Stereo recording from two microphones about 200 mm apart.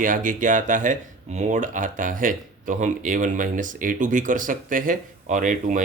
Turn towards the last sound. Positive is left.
turn(degrees=-40)  # may be behind; listen again after turning